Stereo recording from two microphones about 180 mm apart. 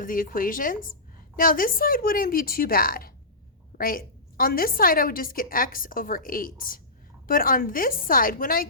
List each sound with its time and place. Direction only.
0.0 s a woman's voice: 50° left (ahead or behind)